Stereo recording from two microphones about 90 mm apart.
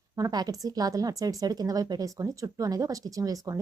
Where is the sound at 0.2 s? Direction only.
45° right (ahead or behind).